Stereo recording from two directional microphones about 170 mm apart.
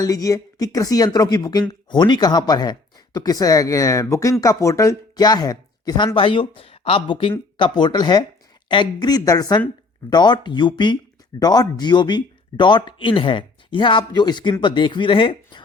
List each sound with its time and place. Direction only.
0.0 s speech: 20° left (ahead or behind)